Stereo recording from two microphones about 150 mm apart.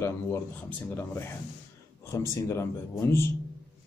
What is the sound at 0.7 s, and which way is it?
Speech, 10° left (ahead or behind).